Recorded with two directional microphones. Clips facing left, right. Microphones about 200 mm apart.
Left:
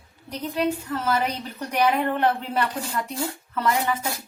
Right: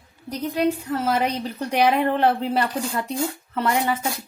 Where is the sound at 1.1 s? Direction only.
35° right (ahead or behind).